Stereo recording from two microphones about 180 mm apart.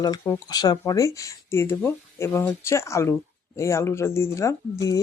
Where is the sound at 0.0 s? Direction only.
20° left (ahead or behind).